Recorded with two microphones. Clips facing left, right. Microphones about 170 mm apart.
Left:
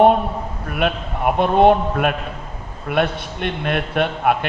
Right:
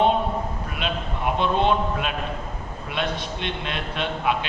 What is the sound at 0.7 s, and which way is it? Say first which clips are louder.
A man's voice: left 11 dB; 55° left (ahead or behind).